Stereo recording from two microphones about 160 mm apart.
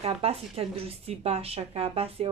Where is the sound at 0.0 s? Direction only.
40° right (ahead or behind).